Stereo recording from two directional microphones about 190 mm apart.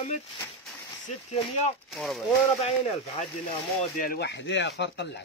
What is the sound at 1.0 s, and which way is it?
Speech, 30° left (ahead or behind).